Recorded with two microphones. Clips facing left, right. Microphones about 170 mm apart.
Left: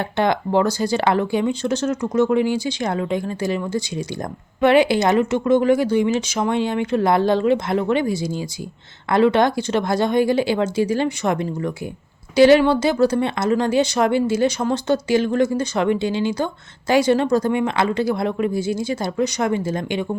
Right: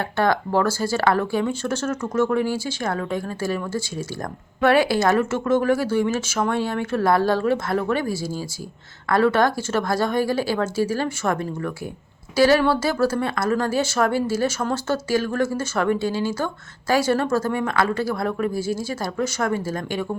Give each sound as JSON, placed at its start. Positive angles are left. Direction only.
{"t": 0.0, "sound": "speech", "side_deg": 20}